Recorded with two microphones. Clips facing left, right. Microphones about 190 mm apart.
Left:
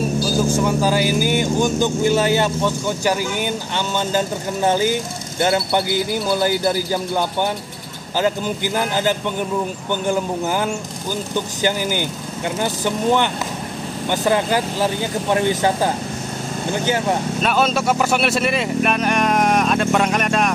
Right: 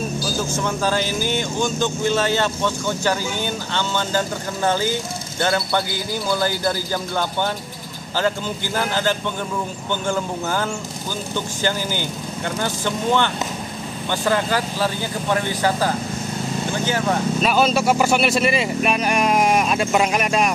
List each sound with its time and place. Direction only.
0.7 s speech: 10° left (ahead or behind)
17.4 s speech: centre (ahead or behind)